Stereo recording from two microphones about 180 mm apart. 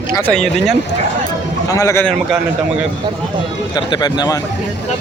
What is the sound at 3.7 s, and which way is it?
Speech, 25° left (ahead or behind).